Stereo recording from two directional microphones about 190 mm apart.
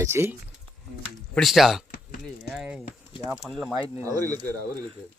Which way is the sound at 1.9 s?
55° left (ahead or behind).